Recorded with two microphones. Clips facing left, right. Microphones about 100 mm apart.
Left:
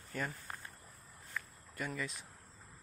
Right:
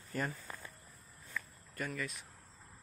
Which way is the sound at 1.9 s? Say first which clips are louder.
Even; 30° left (ahead or behind).